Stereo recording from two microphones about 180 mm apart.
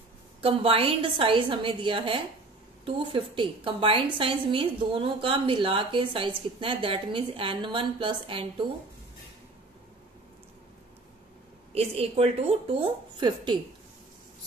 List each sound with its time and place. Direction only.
0.4 s a woman's voice: 30° right (ahead or behind)
11.7 s a woman's voice: 35° right (ahead or behind)